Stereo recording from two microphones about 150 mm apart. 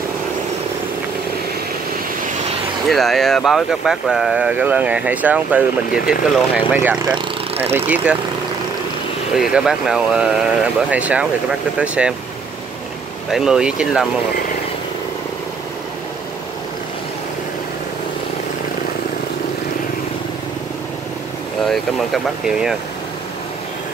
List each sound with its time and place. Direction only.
2.9 s speech: centre (ahead or behind)
7.1 s speech: 35° right (ahead or behind)
7.7 s speech: 10° right (ahead or behind)
9.4 s speech: 5° right (ahead or behind)
13.3 s speech: 5° right (ahead or behind)
21.6 s speech: centre (ahead or behind)